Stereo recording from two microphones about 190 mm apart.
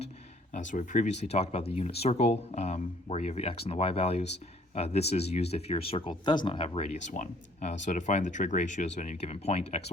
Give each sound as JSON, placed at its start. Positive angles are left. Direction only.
{"t": 0.5, "sound": "speech", "side_deg": 40}